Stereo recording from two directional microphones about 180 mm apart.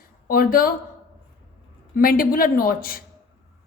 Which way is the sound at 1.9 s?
55° left (ahead or behind).